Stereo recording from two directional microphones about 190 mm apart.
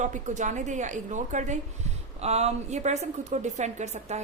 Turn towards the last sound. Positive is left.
turn(degrees=-40)  # may be behind; listen again after turning